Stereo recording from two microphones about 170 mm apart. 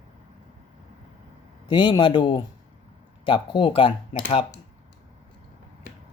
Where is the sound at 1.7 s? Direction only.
25° left (ahead or behind).